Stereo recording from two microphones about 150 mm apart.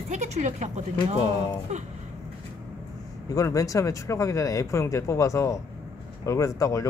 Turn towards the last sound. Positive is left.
turn(degrees=20)  # may be behind; listen again after turning